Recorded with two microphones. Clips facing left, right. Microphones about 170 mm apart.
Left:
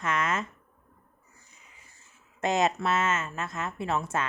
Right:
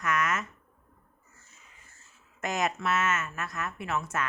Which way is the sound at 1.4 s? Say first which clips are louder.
Left 1 dB; 15° left (ahead or behind).